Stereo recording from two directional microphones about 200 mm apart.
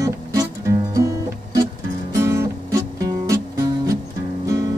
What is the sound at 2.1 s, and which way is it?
Music, 15° right (ahead or behind).